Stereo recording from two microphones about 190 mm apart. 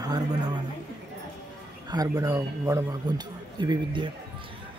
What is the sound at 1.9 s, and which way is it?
Speech, 20° right (ahead or behind).